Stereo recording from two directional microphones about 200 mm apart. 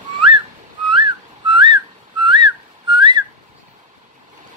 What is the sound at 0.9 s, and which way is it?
Whistling, 25° right (ahead or behind).